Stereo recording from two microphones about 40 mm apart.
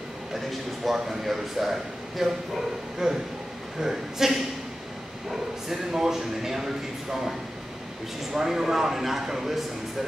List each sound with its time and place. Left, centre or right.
0.3 s speech: centre